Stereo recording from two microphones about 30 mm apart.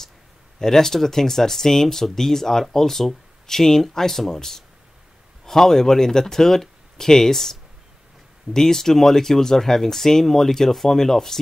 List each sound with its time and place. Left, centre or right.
0.6 s speech: centre
8.5 s speech: centre